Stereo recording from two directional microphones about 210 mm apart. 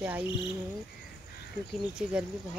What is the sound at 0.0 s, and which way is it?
Speech, 10° right (ahead or behind).